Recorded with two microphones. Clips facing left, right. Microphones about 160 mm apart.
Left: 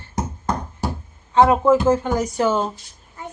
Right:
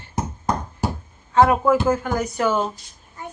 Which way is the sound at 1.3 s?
20° left (ahead or behind).